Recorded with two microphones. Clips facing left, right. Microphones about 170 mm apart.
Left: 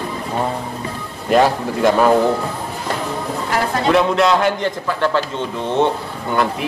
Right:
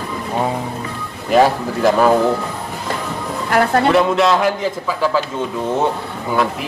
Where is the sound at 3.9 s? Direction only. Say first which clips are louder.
Right 1 dB; centre (ahead or behind).